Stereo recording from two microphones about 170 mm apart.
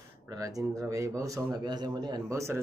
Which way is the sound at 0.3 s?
20° right (ahead or behind).